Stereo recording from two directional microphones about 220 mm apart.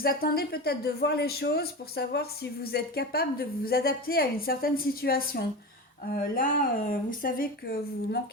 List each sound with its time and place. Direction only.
0.0 s a woman's voice: 40° left (ahead or behind)